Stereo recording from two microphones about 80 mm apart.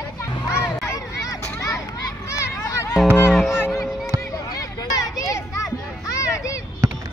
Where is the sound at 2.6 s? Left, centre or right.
Left.